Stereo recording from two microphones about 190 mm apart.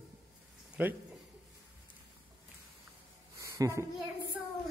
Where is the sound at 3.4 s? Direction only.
15° right (ahead or behind).